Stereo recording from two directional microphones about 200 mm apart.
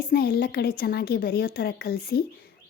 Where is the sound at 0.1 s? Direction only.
50° left (ahead or behind).